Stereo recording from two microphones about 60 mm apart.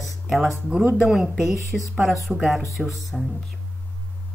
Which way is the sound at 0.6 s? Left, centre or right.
Centre.